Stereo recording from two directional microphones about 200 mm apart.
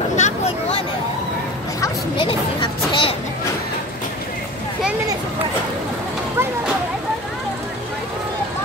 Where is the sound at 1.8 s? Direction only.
25° left (ahead or behind).